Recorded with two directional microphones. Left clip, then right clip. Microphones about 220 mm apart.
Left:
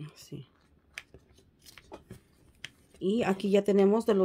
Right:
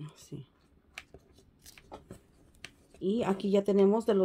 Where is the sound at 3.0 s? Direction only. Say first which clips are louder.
Left 2 dB; 15° left (ahead or behind).